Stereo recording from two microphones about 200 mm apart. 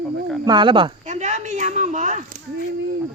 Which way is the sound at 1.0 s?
35° right (ahead or behind).